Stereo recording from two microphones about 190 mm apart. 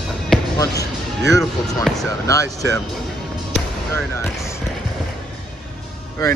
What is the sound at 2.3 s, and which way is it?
Speech, 15° left (ahead or behind).